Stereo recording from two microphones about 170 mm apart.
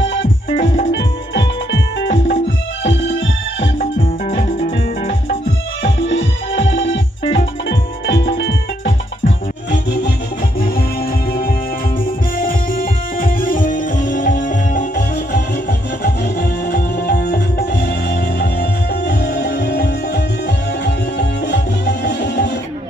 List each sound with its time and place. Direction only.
6.0 s music: 90° left
6.7 s organ: 90° left
8.1 s music: 90° left
12.4 s music: 55° left (ahead or behind)
16.0 s music: 75° left (ahead or behind)